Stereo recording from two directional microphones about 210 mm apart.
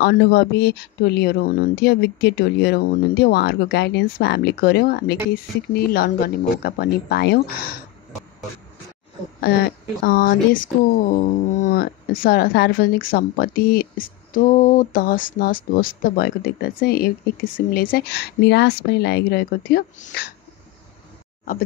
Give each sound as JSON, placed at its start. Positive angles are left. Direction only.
{"t": 0.0, "sound": "speech", "side_deg": 50}
{"t": 9.4, "sound": "speech", "side_deg": 45}